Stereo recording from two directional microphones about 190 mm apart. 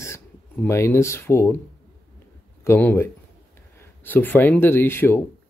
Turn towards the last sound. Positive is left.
turn(degrees=10)  # may be behind; listen again after turning